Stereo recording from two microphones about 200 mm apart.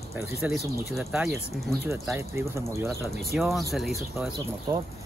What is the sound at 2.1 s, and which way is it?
Speech, 15° right (ahead or behind).